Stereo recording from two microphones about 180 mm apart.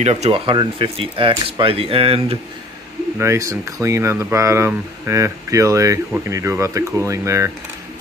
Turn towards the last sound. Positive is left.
turn(degrees=-15)  # may be behind; listen again after turning